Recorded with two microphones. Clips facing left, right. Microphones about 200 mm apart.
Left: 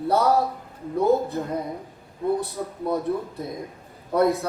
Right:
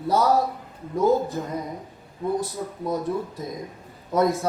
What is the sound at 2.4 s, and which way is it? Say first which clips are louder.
Speech: even; 60° left (ahead or behind).